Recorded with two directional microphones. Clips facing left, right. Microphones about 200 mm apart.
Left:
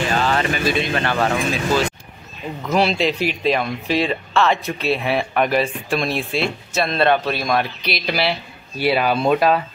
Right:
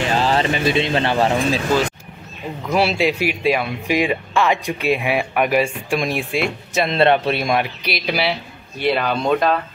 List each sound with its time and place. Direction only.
0.1 s speech: 30° right (ahead or behind)
2.7 s speech: 10° right (ahead or behind); by 9.6 s 5° left (ahead or behind)